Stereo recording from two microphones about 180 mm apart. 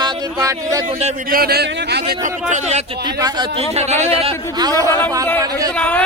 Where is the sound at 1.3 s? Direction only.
55° right (ahead or behind).